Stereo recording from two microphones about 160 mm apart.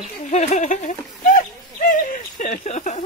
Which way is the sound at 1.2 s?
55° left (ahead or behind).